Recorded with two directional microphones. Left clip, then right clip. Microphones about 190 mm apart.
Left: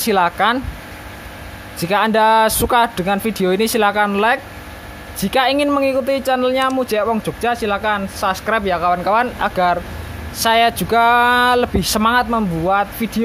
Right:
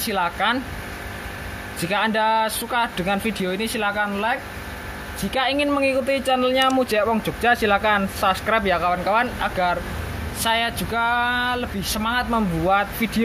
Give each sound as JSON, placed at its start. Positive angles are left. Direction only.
{"t": 0.0, "sound": "speech", "side_deg": 35}
{"t": 1.8, "sound": "speech", "side_deg": 30}
{"t": 12.3, "sound": "speech", "side_deg": 20}